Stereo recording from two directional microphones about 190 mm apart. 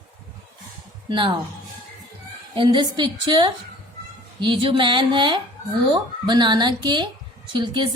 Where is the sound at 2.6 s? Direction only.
25° right (ahead or behind).